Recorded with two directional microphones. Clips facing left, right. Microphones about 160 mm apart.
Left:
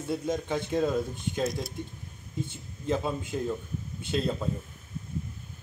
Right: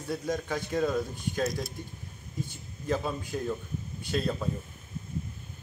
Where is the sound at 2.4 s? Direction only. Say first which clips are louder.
Left 1 dB; 25° left (ahead or behind).